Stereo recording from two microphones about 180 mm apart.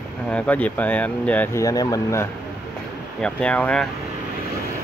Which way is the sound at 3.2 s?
5° left (ahead or behind).